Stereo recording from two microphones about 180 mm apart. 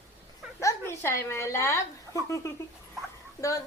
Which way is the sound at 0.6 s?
15° left (ahead or behind).